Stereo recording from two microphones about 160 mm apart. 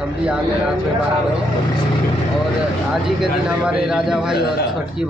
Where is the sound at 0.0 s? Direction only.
5° right (ahead or behind).